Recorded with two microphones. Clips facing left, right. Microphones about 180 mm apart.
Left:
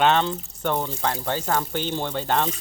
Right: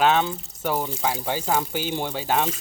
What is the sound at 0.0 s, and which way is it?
Speech, 5° right (ahead or behind).